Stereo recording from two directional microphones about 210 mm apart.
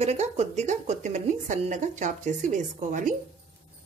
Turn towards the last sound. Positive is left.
turn(degrees=-35)  # may be behind; listen again after turning